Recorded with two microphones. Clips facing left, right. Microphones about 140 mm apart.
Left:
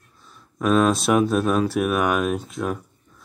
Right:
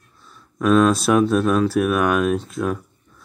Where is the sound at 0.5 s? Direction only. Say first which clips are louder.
Right 3 dB; 5° left (ahead or behind).